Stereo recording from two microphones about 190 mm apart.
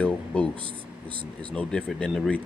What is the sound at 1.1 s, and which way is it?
Speech, 25° right (ahead or behind).